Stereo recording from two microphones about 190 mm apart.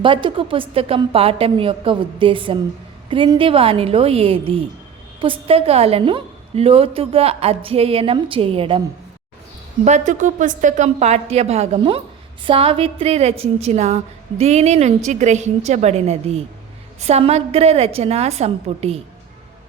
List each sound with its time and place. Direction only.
0.0 s a woman's voice: 25° right (ahead or behind)
9.8 s a woman's voice: 40° right (ahead or behind)